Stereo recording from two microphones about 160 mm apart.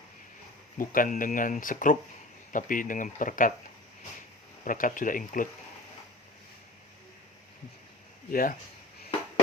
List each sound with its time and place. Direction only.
0.8 s speech: 55° left (ahead or behind)
4.6 s speech: 55° left (ahead or behind)
8.3 s speech: 65° left (ahead or behind)